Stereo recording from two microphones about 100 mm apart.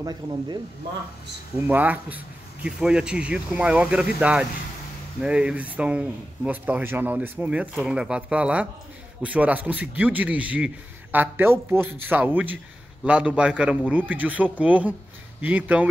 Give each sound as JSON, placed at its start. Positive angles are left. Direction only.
{"t": 0.0, "sound": "speech", "side_deg": -45}
{"t": 1.6, "sound": "speech", "side_deg": -15}